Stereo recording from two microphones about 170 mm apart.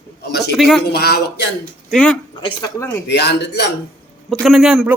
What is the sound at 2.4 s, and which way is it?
Speech, 25° left (ahead or behind).